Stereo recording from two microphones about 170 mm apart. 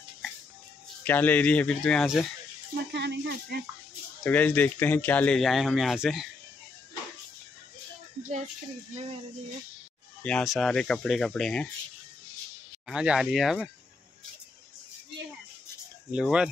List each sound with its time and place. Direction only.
1.0 s speech: 10° left (ahead or behind)
2.9 s speech: 80° right
4.2 s speech: 10° left (ahead or behind)
10.2 s speech: 5° left (ahead or behind)
12.8 s speech: 5° right (ahead or behind)
16.1 s speech: 5° right (ahead or behind)